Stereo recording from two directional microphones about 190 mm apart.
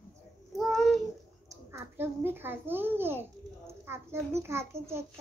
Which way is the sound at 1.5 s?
10° right (ahead or behind).